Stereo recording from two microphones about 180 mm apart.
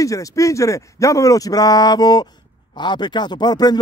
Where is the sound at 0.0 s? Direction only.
20° left (ahead or behind).